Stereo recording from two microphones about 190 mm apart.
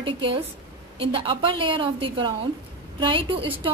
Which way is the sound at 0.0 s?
25° right (ahead or behind).